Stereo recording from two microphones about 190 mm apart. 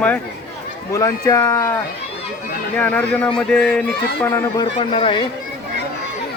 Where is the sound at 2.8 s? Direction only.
10° left (ahead or behind).